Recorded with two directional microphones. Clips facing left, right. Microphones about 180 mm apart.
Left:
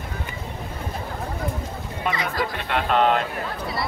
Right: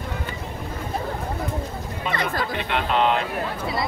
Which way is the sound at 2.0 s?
55° left (ahead or behind).